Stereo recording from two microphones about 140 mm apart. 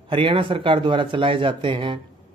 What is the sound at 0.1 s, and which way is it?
Speech, 35° right (ahead or behind).